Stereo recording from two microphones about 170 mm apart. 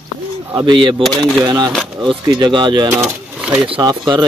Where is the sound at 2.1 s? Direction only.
25° right (ahead or behind).